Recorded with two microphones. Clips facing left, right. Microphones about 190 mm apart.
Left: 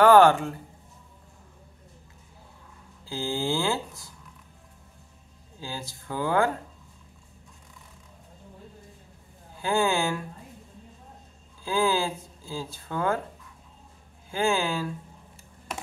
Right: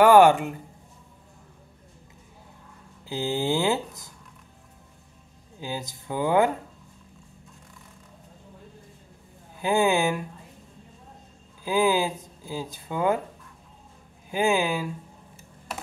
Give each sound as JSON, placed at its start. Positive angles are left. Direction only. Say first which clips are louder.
{"t": 0.0, "sound": "speech", "louder": "right 1 dB", "side_deg": -15}
{"t": 3.1, "sound": "speech", "louder": "right 3 dB", "side_deg": -20}
{"t": 5.6, "sound": "speech", "louder": "right 4 dB", "side_deg": -20}
{"t": 9.6, "sound": "speech", "louder": "right 3 dB", "side_deg": -15}
{"t": 11.6, "sound": "speech", "louder": "right 3 dB", "side_deg": -15}
{"t": 14.3, "sound": "speech", "louder": "right 2 dB", "side_deg": -15}